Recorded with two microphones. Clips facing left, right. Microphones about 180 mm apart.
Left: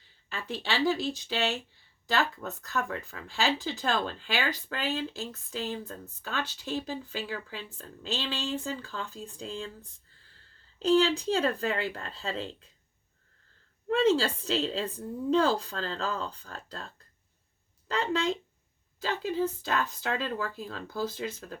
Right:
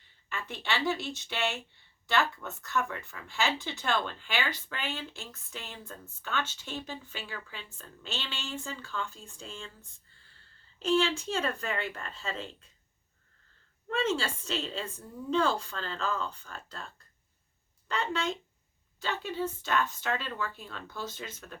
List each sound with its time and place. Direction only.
0.3 s speech: 35° left (ahead or behind)
13.8 s speech: 35° left (ahead or behind)
19.6 s speech: 35° left (ahead or behind)